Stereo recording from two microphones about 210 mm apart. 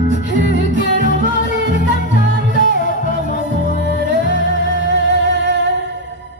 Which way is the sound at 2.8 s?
40° left (ahead or behind).